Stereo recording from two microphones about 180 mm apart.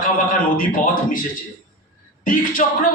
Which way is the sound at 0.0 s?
50° left (ahead or behind).